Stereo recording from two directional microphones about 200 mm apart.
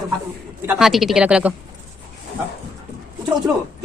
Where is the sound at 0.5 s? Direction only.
5° right (ahead or behind).